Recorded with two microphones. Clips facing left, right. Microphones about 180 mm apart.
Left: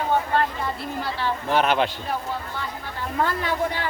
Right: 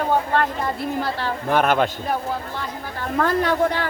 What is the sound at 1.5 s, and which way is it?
Speech, 50° right (ahead or behind).